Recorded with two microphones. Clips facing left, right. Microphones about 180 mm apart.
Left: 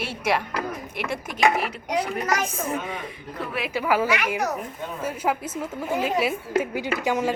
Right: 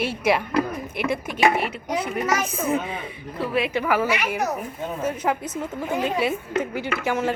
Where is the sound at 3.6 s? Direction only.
5° left (ahead or behind).